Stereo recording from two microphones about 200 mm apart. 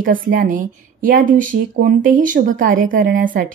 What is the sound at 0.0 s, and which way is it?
A woman's voice, 45° right (ahead or behind).